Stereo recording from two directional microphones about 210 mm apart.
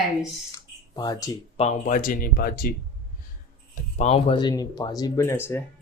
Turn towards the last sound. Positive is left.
turn(degrees=10)  # may be behind; listen again after turning